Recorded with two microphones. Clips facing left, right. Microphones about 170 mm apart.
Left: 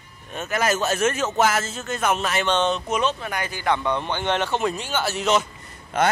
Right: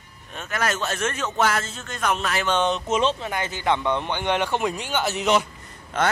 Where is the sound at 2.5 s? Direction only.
15° right (ahead or behind).